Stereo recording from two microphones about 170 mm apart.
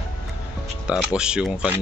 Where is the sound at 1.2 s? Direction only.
5° right (ahead or behind).